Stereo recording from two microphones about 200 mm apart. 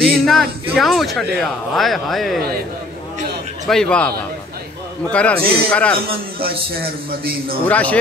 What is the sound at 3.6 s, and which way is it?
Speech, 5° left (ahead or behind).